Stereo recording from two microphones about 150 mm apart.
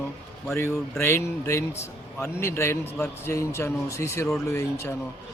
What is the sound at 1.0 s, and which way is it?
A man's voice, 15° left (ahead or behind).